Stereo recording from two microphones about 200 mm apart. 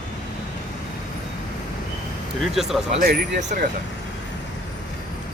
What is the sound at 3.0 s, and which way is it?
Speech, 40° right (ahead or behind).